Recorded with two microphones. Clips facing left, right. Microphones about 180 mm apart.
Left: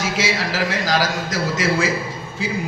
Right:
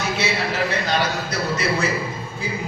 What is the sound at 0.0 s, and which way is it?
A man's voice, 90° left.